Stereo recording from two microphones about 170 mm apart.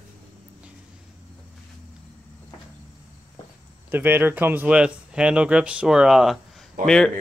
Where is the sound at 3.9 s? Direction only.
10° right (ahead or behind).